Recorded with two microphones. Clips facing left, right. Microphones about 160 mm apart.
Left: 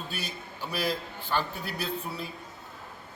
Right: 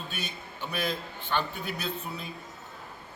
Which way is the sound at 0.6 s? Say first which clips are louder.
Left 1 dB; 5° left (ahead or behind).